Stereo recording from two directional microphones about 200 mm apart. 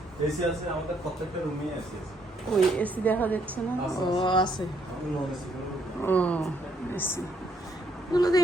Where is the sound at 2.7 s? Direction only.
10° left (ahead or behind).